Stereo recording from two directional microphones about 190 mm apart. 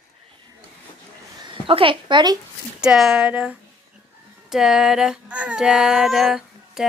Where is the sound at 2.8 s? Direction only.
5° right (ahead or behind).